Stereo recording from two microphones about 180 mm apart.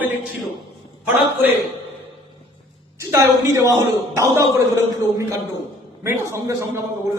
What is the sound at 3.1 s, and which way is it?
A man's voice, 15° right (ahead or behind).